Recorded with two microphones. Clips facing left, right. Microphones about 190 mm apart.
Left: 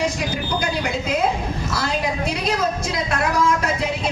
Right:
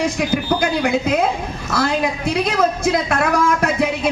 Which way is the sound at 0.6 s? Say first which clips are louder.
Right 6 dB; 55° right (ahead or behind).